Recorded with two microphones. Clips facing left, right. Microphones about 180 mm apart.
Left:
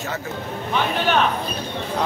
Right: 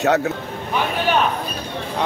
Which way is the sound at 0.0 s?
70° right (ahead or behind).